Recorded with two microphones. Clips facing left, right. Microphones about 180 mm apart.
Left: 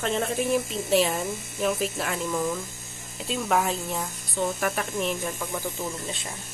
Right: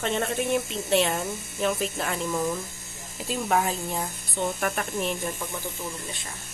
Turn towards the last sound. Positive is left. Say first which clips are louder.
# left 1 dB
turn(degrees=0)  # may be behind; listen again after turning